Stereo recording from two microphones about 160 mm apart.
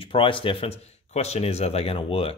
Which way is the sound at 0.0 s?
30° left (ahead or behind).